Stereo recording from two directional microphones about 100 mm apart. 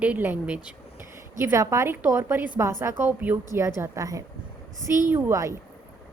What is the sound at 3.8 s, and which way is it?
Speech, 35° right (ahead or behind).